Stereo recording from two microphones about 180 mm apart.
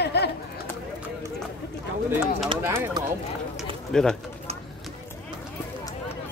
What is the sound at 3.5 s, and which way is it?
Speech, 5° left (ahead or behind).